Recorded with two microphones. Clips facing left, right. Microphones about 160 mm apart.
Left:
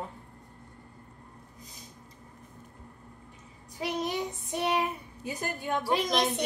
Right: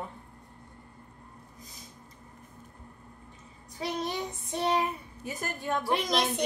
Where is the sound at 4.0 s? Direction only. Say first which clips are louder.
Left 2 dB; 15° left (ahead or behind).